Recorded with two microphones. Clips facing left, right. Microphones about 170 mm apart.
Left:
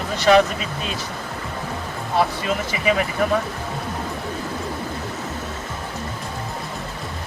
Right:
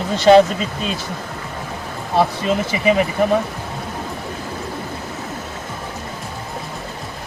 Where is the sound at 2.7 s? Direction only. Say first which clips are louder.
Right 4 dB; 25° right (ahead or behind).